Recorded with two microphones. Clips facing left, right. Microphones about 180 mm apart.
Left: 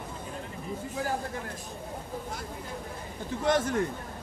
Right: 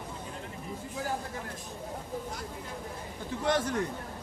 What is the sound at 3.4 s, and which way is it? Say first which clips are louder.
Speech: left 3 dB; 45° left (ahead or behind).